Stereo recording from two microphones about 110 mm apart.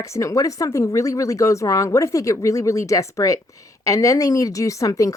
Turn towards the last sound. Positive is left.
turn(degrees=30)  # may be behind; listen again after turning